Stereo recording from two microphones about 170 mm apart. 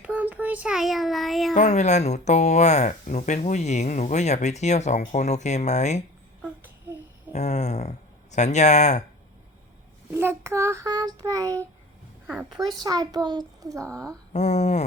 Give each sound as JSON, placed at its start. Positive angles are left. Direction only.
{"t": 0.0, "sound": "child singing", "side_deg": -10}
{"t": 1.5, "sound": "speech", "side_deg": 45}
{"t": 6.4, "sound": "a sound", "side_deg": -10}
{"t": 7.3, "sound": "speech", "side_deg": 40}
{"t": 10.1, "sound": "child singing", "side_deg": -15}
{"t": 14.3, "sound": "speech", "side_deg": 40}